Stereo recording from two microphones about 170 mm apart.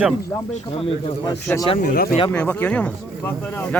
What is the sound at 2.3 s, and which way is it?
Speech, 10° left (ahead or behind).